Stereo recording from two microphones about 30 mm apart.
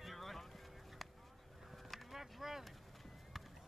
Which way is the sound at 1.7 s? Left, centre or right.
Centre.